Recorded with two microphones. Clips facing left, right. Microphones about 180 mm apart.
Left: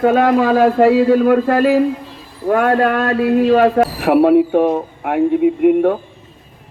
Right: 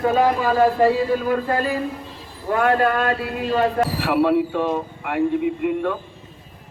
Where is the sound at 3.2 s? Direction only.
65° left (ahead or behind).